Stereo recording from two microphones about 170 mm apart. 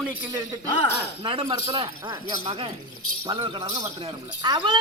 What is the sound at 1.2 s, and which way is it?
Speech, 30° right (ahead or behind).